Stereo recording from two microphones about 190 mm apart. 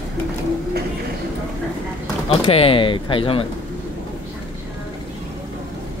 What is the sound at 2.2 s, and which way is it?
Speech, 30° left (ahead or behind).